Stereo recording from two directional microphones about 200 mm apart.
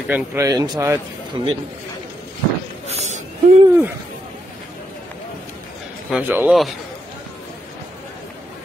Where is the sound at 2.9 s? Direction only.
35° right (ahead or behind).